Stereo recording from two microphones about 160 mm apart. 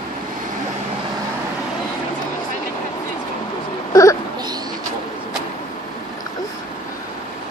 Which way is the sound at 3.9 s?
20° left (ahead or behind).